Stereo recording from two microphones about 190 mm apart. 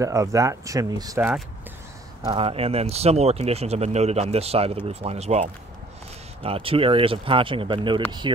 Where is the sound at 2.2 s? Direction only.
30° right (ahead or behind).